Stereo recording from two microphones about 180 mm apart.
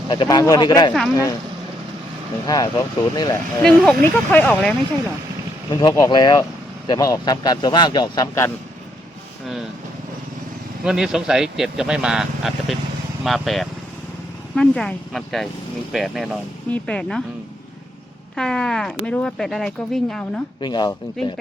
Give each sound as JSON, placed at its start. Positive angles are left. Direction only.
{"t": 0.1, "sound": "speech", "side_deg": 25}
{"t": 2.5, "sound": "speech", "side_deg": 20}
{"t": 3.6, "sound": "speech", "side_deg": 5}
{"t": 5.7, "sound": "speech", "side_deg": 20}
{"t": 10.8, "sound": "speech", "side_deg": -5}
{"t": 18.3, "sound": "speech", "side_deg": 5}
{"t": 20.6, "sound": "speech", "side_deg": 25}